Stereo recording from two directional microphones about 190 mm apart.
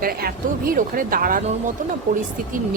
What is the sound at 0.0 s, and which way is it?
Speech, 50° right (ahead or behind).